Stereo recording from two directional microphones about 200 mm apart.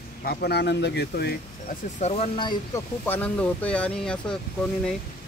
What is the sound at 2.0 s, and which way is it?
Speech, 30° left (ahead or behind).